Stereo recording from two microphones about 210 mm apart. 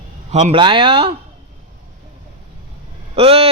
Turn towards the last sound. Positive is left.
turn(degrees=-25)  # may be behind; listen again after turning